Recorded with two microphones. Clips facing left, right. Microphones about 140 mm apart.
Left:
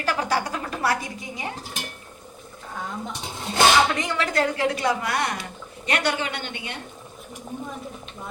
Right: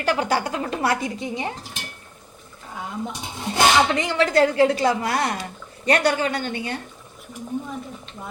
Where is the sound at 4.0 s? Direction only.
30° right (ahead or behind).